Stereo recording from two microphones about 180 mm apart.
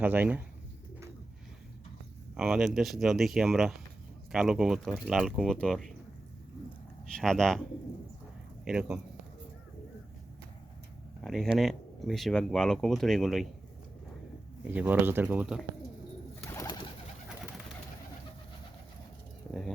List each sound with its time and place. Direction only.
0.0 s speech: 10° right (ahead or behind)
2.3 s speech: centre (ahead or behind)
7.1 s speech: 5° left (ahead or behind)
8.6 s speech: 5° right (ahead or behind)
11.2 s speech: centre (ahead or behind)
14.6 s speech: 10° right (ahead or behind)
16.6 s bird: 25° left (ahead or behind)
19.5 s speech: 5° left (ahead or behind)